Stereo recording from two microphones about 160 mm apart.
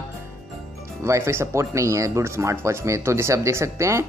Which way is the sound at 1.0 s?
15° right (ahead or behind).